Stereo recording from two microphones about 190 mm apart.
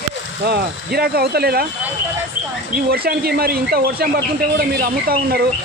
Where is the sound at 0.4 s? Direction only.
55° right (ahead or behind).